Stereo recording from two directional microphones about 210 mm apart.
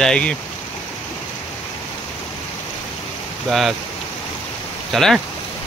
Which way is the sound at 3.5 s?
Centre (ahead or behind).